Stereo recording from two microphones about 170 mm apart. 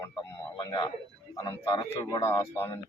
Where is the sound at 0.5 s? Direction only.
25° left (ahead or behind).